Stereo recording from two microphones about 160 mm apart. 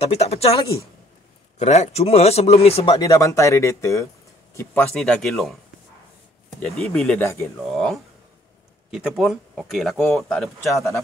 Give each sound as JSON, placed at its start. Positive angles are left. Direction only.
{"t": 0.1, "sound": "speech", "side_deg": 40}
{"t": 1.6, "sound": "speech", "side_deg": 45}
{"t": 3.1, "sound": "speech", "side_deg": 20}
{"t": 4.6, "sound": "speech", "side_deg": 10}
{"t": 6.6, "sound": "speech", "side_deg": 5}
{"t": 7.7, "sound": "speech", "side_deg": 0}